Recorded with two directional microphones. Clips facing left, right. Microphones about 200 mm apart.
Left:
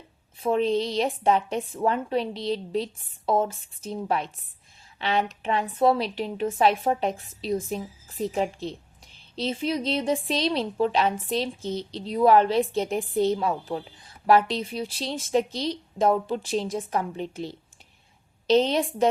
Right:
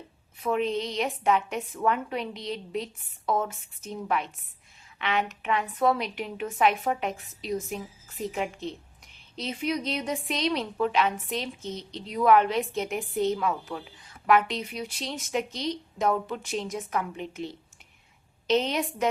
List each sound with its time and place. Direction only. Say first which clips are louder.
0.3 s a woman's voice: left 4 dB; 30° left (ahead or behind)